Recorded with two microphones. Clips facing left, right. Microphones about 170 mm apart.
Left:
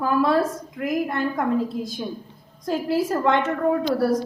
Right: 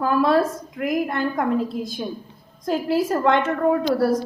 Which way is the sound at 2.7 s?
55° right (ahead or behind).